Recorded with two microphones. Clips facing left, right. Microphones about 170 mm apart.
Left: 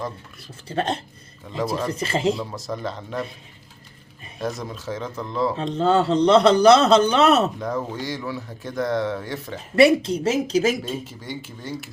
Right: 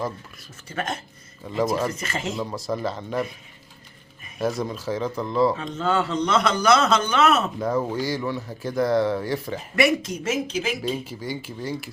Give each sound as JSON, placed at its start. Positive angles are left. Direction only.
{"t": 0.7, "sound": "a man's voice", "side_deg": 30}
{"t": 1.5, "sound": "speech", "side_deg": 0}
{"t": 1.9, "sound": "a man's voice", "side_deg": 30}
{"t": 2.3, "sound": "speech", "side_deg": 0}
{"t": 4.4, "sound": "speech", "side_deg": 0}
{"t": 5.5, "sound": "a man's voice", "side_deg": 35}
{"t": 7.6, "sound": "speech", "side_deg": 0}
{"t": 9.7, "sound": "a man's voice", "side_deg": 30}
{"t": 10.8, "sound": "speech", "side_deg": 0}